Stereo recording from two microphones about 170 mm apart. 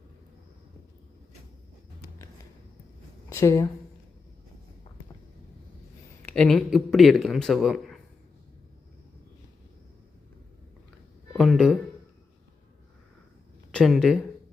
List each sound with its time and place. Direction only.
3.2 s speech: 15° left (ahead or behind)
6.2 s speech: 5° left (ahead or behind)
11.3 s speech: centre (ahead or behind)
13.7 s speech: centre (ahead or behind)